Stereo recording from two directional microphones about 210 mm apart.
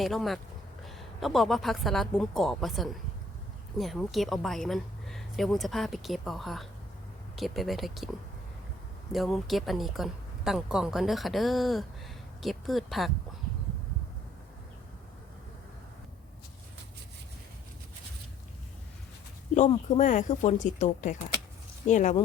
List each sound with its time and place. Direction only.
0.0 s a woman's voice: centre (ahead or behind)
9.1 s a woman's voice: centre (ahead or behind)
19.5 s speech: 35° left (ahead or behind)